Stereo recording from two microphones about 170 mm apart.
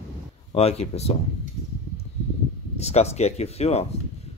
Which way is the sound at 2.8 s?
40° left (ahead or behind).